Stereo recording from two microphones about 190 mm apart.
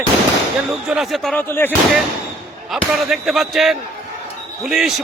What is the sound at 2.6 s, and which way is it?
A man's voice, centre (ahead or behind).